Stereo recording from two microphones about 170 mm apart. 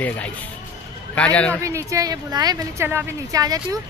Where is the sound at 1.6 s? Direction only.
20° right (ahead or behind).